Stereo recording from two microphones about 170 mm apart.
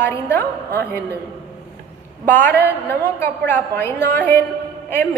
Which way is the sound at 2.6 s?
15° left (ahead or behind).